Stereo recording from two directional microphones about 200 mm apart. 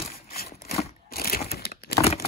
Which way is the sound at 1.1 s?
50° left (ahead or behind).